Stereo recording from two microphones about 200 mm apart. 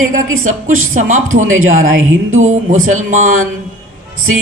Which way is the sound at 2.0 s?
85° right.